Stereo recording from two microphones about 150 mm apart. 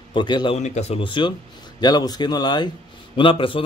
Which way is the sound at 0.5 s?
45° left (ahead or behind).